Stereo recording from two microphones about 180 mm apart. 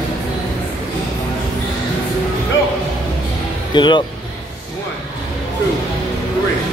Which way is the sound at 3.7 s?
25° left (ahead or behind).